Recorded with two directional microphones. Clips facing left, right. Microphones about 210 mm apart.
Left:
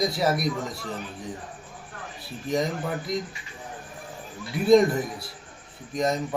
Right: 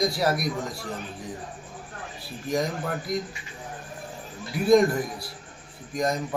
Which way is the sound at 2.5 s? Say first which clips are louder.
Left 1 dB; centre (ahead or behind).